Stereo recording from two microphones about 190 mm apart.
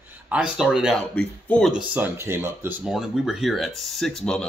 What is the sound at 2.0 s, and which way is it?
Speech, 10° right (ahead or behind).